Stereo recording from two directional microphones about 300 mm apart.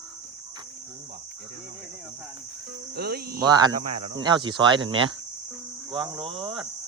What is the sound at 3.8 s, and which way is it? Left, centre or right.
Speech, right.